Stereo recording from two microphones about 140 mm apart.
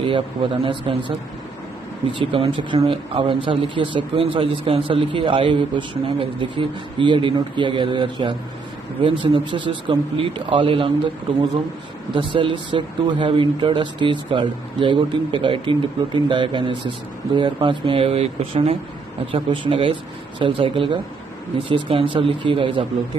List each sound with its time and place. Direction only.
0.0 s speech: 35° right (ahead or behind)
2.1 s speech: 40° right (ahead or behind)
12.1 s speech: 35° right (ahead or behind)